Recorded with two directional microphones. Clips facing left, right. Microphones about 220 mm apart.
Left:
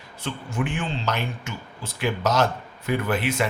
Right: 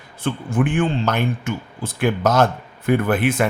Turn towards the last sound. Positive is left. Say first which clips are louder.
# right 6 dB
turn(degrees=-50)  # may be behind; listen again after turning